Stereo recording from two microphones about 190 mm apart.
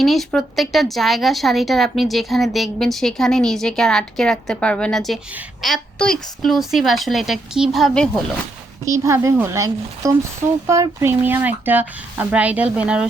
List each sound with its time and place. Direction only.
0.0 s speech: centre (ahead or behind)
8.8 s speech: 15° right (ahead or behind)